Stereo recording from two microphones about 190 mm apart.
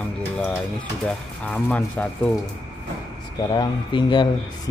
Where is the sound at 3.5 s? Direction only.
25° left (ahead or behind).